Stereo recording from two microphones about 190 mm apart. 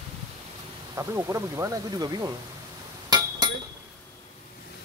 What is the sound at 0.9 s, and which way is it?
Speech, 15° right (ahead or behind).